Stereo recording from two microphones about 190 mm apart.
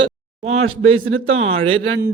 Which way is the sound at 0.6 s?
90° right.